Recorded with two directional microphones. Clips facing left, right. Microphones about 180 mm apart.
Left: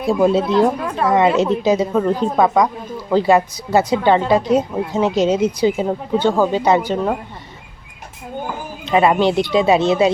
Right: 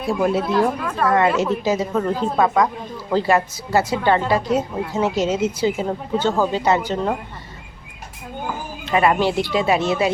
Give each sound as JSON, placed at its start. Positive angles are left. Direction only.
{"t": 0.1, "sound": "a woman's voice", "side_deg": 20}
{"t": 8.8, "sound": "a woman's voice", "side_deg": 20}